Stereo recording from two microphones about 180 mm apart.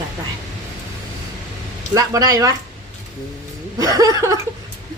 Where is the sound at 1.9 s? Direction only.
20° right (ahead or behind).